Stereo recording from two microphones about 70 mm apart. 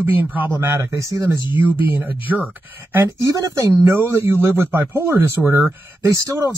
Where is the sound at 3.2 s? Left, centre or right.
Right.